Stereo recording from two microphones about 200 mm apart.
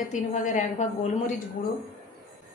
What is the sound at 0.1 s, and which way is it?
Speech, 40° left (ahead or behind).